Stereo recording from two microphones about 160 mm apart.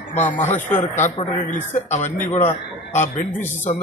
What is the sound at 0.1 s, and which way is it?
A man's voice, 50° left (ahead or behind).